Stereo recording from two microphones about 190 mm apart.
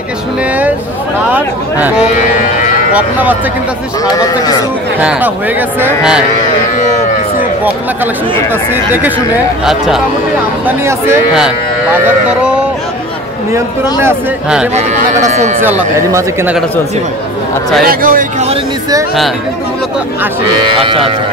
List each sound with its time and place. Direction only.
1.3 s speech: 10° right (ahead or behind)
4.0 s a man's voice: 20° left (ahead or behind)
4.9 s speech: 10° right (ahead or behind)
7.6 s speech: 10° right (ahead or behind)
9.7 s speech: centre (ahead or behind)
10.9 s speech: 15° right (ahead or behind)
14.0 s speech: 5° right (ahead or behind)
14.8 s speech: 35° right (ahead or behind)
16.1 s speech: 15° right (ahead or behind)
17.8 s speech: 45° right (ahead or behind)
20.8 s speech: 30° right (ahead or behind)